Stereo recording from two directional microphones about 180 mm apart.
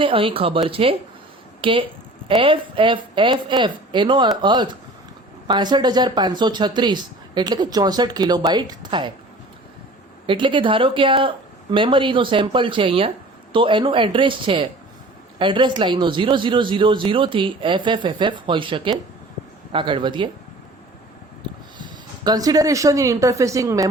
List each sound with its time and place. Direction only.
0.0 s speech: 30° right (ahead or behind)
10.2 s speech: 25° right (ahead or behind)
21.4 s speech: 25° right (ahead or behind)